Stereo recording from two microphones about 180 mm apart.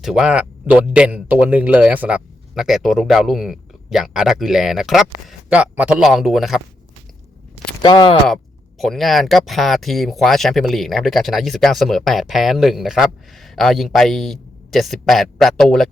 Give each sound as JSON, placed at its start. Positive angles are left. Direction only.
{"t": 0.0, "sound": "speech", "side_deg": -5}
{"t": 7.8, "sound": "speech", "side_deg": 25}
{"t": 8.8, "sound": "speech", "side_deg": 0}